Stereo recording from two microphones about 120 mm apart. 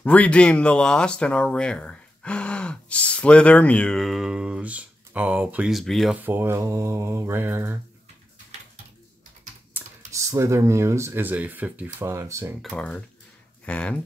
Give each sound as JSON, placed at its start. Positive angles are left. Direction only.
{"t": 0.0, "sound": "speech", "side_deg": 10}
{"t": 6.2, "sound": "speech", "side_deg": -20}
{"t": 10.1, "sound": "speech", "side_deg": -25}
{"t": 12.1, "sound": "speech", "side_deg": -25}
{"t": 12.7, "sound": "speech", "side_deg": 10}